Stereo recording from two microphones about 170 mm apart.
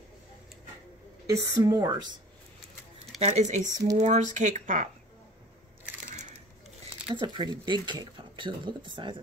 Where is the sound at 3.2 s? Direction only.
40° right (ahead or behind).